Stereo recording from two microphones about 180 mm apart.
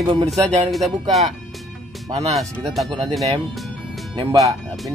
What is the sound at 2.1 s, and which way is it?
Speech, 35° right (ahead or behind).